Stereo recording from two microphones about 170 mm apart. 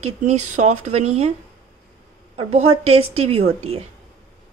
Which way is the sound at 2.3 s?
35° right (ahead or behind).